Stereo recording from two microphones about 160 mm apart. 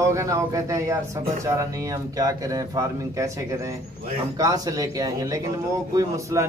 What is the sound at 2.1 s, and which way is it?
A man's voice, 20° right (ahead or behind).